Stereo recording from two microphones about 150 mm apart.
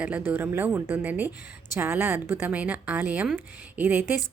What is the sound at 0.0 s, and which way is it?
A woman's voice, 10° right (ahead or behind).